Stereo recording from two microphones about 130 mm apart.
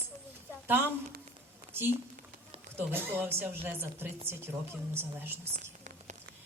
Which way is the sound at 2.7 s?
15° right (ahead or behind).